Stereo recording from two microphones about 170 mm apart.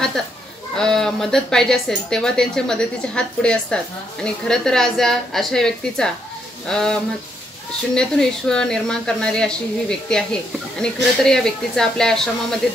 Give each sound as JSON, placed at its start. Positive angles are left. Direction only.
{"t": 0.7, "sound": "a woman's voice", "side_deg": 5}